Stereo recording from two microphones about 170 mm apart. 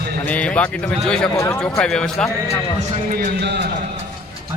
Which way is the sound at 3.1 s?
70° right (ahead or behind).